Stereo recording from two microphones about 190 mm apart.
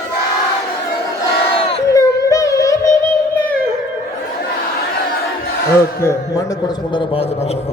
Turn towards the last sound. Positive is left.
turn(degrees=15)  # may be behind; listen again after turning